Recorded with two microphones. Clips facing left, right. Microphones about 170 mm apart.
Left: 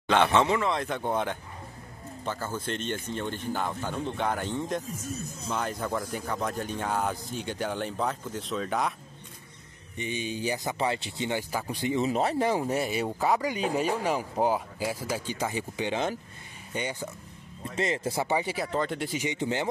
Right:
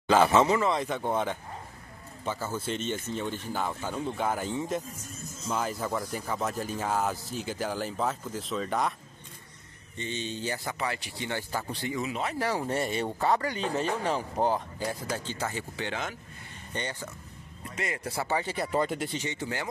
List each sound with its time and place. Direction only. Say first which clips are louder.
0.1 s speech: right 1 dB; 5° right (ahead or behind)
9.9 s speech: left 2 dB; 10° left (ahead or behind)
12.1 s speech: left 6 dB; 40° left (ahead or behind)
12.4 s speech: left 4 dB; 15° left (ahead or behind)
12.6 s speech: left 1 dB; 5° left (ahead or behind)
17.7 s speech: left 5 dB; 25° left (ahead or behind)
18.6 s speech: right 1 dB; 5° right (ahead or behind)
19.1 s speech: left 4 dB; 15° left (ahead or behind)